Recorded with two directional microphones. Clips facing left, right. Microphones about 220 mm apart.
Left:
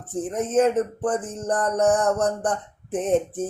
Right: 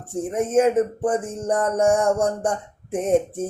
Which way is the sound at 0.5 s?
10° right (ahead or behind).